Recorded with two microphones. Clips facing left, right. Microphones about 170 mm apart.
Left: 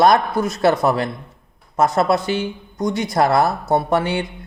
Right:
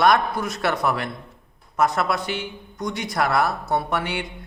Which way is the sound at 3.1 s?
30° left (ahead or behind).